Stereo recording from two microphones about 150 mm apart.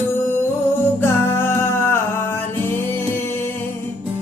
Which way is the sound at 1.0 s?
15° left (ahead or behind).